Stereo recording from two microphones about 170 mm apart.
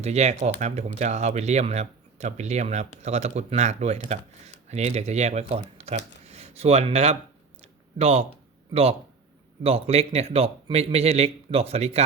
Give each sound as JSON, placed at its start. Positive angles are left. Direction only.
{"t": 0.0, "sound": "speech", "side_deg": -40}
{"t": 7.6, "sound": "a sound", "side_deg": -35}
{"t": 8.7, "sound": "speech", "side_deg": -35}